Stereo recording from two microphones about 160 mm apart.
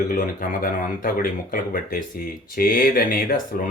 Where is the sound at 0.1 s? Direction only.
55° left (ahead or behind).